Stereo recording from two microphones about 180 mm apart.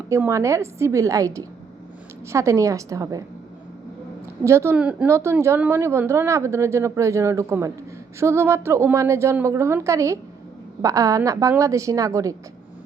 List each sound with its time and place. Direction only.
0.1 s a woman's voice: 15° right (ahead or behind)
4.4 s a woman's voice: 15° right (ahead or behind)